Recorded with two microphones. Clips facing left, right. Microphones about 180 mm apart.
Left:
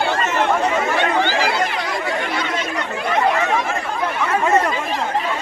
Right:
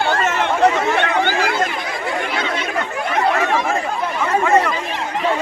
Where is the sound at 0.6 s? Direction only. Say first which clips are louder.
Right 3 dB; 55° right (ahead or behind).